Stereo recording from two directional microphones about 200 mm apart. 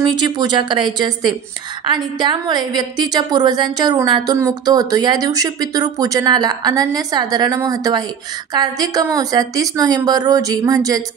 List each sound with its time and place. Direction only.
0.0 s a woman's voice: 20° right (ahead or behind)